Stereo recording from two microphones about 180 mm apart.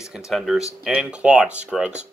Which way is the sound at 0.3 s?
Centre (ahead or behind).